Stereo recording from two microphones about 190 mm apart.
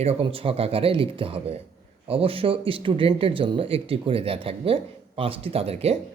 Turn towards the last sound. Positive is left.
turn(degrees=-35)  # may be behind; listen again after turning